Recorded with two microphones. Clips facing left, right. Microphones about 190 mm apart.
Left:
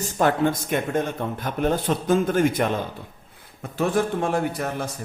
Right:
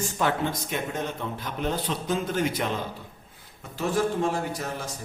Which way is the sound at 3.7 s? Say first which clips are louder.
Left 3 dB; 55° left (ahead or behind).